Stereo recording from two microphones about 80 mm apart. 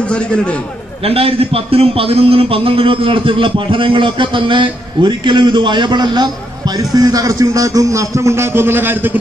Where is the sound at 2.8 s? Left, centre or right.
Right.